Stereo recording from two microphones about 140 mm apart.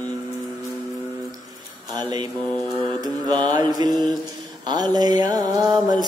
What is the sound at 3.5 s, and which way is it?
Mantra, 30° right (ahead or behind).